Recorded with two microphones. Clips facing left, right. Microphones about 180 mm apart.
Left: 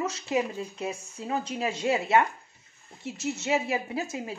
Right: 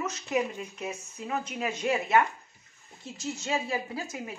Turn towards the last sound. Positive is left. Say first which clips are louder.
# left 4 dB
turn(degrees=25)  # may be behind; listen again after turning